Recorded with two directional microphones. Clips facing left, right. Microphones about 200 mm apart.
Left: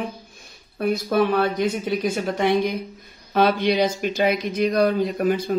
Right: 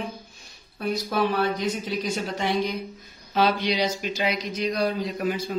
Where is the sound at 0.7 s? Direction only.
55° left (ahead or behind).